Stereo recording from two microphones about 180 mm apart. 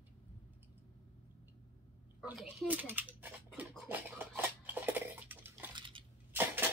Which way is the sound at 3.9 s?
10° right (ahead or behind).